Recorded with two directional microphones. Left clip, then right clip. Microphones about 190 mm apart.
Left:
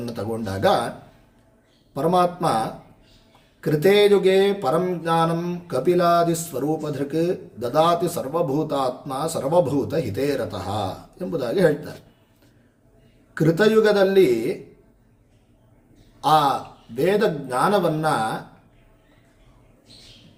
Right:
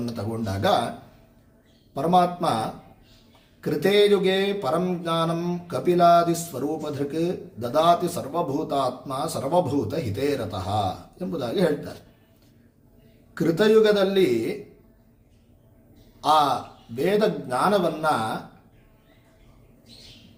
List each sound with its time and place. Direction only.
0.0 s speech: 25° left (ahead or behind)
1.9 s a man's voice: 25° left (ahead or behind)
13.3 s a man's voice: 25° left (ahead or behind)
16.2 s a man's voice: 20° left (ahead or behind)